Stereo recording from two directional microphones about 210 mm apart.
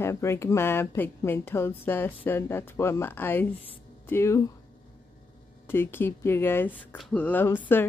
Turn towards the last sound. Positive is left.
turn(degrees=10)  # may be behind; listen again after turning